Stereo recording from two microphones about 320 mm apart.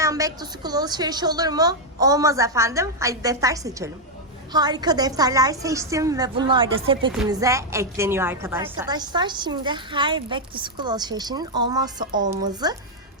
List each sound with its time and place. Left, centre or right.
0.0 s a woman's voice: centre